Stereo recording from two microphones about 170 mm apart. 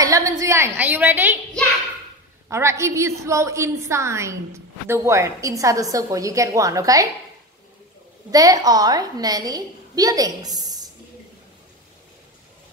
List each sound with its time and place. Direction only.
0.0 s a woman's voice: 20° right (ahead or behind)
2.5 s a woman's voice: 15° right (ahead or behind)
8.3 s a woman's voice: 20° right (ahead or behind)